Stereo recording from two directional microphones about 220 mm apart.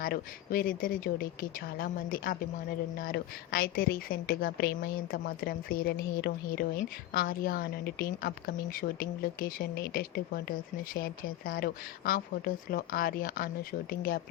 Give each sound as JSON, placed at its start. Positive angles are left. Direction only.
{"t": 0.0, "sound": "a woman's voice", "side_deg": 40}